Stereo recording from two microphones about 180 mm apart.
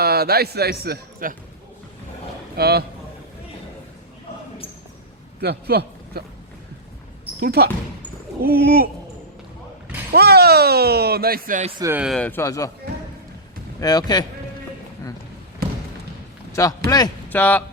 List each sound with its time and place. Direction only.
0.0 s speech: 60° right (ahead or behind)
2.6 s speech: 60° right (ahead or behind)
5.4 s speech: 60° right (ahead or behind)
7.3 s speech: 60° right (ahead or behind)
10.1 s speech: 60° right (ahead or behind)
11.8 s speech: 15° right (ahead or behind)
12.0 s speech: 5° left (ahead or behind)
13.7 s speech: 20° left (ahead or behind)
16.5 s a sound: 20° left (ahead or behind)
17.2 s a man's voice: 10° left (ahead or behind)